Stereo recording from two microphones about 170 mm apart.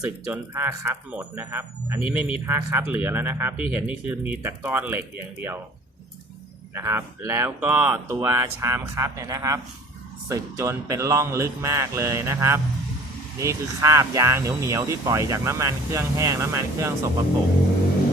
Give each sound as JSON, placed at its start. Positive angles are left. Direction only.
{"t": 0.0, "sound": "speech", "side_deg": -10}
{"t": 6.7, "sound": "speech", "side_deg": -15}